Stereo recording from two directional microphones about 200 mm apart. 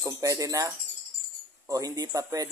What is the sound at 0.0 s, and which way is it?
Speech, 15° right (ahead or behind).